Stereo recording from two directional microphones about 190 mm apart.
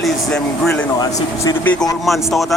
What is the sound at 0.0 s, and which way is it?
Speech, 5° left (ahead or behind).